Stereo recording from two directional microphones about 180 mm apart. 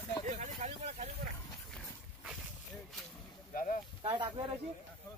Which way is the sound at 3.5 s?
50° left (ahead or behind).